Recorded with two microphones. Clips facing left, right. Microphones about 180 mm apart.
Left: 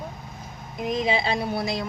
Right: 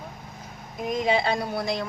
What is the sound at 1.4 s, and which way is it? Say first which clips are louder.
Speech: left 1 dB; 5° left (ahead or behind).